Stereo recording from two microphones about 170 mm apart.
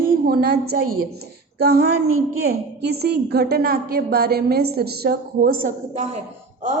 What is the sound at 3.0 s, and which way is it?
A woman's voice, 70° right (ahead or behind).